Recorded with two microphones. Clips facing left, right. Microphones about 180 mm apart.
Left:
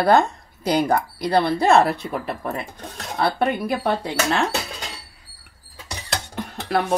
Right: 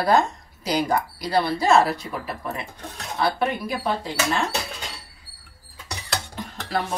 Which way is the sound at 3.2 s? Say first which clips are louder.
Left 2 dB; 60° left (ahead or behind).